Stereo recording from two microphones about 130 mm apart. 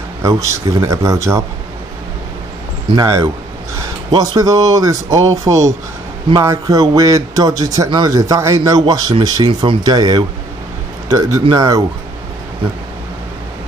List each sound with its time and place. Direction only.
0.2 s a man's voice: 25° right (ahead or behind)
3.0 s a man's voice: 25° right (ahead or behind)